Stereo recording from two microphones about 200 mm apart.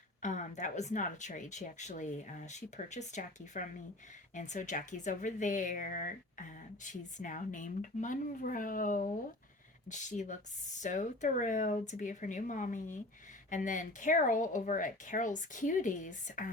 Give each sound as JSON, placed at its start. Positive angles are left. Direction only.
{"t": 0.2, "sound": "speech", "side_deg": 35}